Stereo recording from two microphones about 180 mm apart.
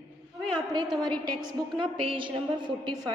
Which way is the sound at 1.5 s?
25° right (ahead or behind).